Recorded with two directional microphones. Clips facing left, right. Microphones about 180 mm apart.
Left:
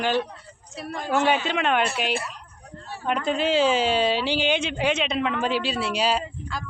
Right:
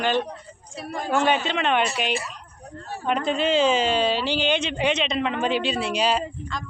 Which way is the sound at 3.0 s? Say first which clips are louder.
Right 1 dB; 5° left (ahead or behind).